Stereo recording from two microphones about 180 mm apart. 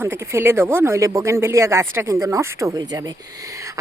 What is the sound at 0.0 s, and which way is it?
Speech, 10° right (ahead or behind).